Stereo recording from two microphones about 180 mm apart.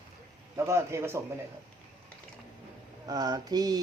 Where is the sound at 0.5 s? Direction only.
15° right (ahead or behind).